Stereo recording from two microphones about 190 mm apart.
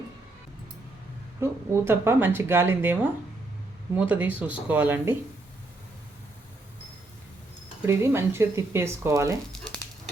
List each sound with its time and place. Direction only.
1.4 s speech: 10° right (ahead or behind)
7.8 s speech: 15° right (ahead or behind)